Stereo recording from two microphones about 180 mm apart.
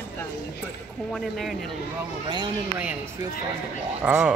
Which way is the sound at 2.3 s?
25° right (ahead or behind).